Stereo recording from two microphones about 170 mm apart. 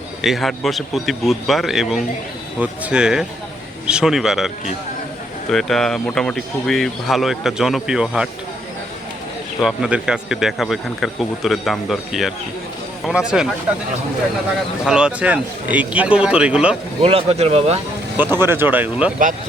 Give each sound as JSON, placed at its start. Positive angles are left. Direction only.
{"t": 0.2, "sound": "speech", "side_deg": 0}
{"t": 9.6, "sound": "speech", "side_deg": 0}
{"t": 14.8, "sound": "speech", "side_deg": -5}
{"t": 17.0, "sound": "speech", "side_deg": -35}
{"t": 18.2, "sound": "speech", "side_deg": -15}